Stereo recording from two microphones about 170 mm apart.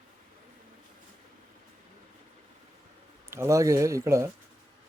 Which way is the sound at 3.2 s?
15° right (ahead or behind).